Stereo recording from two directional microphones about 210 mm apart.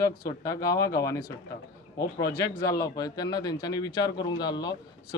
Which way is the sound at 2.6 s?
15° left (ahead or behind).